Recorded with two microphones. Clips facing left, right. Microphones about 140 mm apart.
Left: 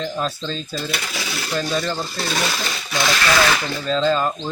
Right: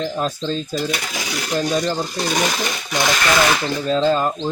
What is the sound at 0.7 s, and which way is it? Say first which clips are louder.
Speech: right 4 dB; 15° right (ahead or behind).